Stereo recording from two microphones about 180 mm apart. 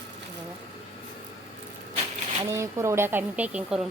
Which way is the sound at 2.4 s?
15° right (ahead or behind).